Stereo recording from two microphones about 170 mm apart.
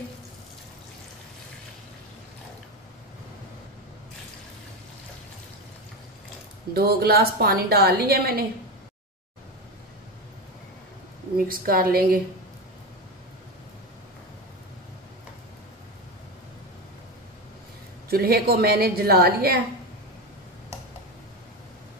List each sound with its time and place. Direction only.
6.7 s a woman's voice: 65° right (ahead or behind)
11.3 s a woman's voice: 55° right (ahead or behind)
18.1 s a woman's voice: 65° right (ahead or behind)